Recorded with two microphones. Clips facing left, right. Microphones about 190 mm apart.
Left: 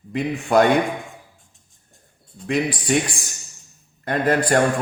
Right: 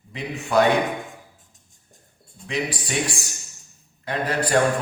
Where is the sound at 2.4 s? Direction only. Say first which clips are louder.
Left 6 dB; 50° left (ahead or behind).